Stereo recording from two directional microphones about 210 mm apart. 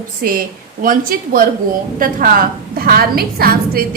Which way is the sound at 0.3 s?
40° right (ahead or behind).